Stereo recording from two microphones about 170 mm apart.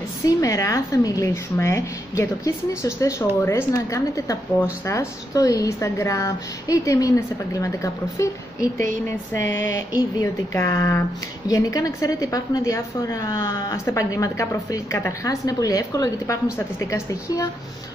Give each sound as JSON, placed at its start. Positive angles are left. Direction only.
{"t": 0.2, "sound": "a woman's voice", "side_deg": 20}